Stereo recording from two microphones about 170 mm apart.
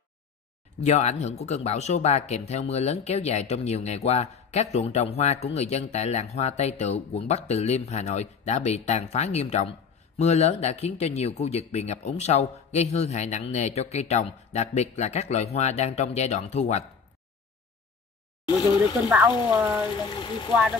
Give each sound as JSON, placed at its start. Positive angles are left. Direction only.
{"t": 0.8, "sound": "speech", "side_deg": 40}
{"t": 18.6, "sound": "speech", "side_deg": 25}
{"t": 19.0, "sound": "speech", "side_deg": -10}
{"t": 20.0, "sound": "speech", "side_deg": 25}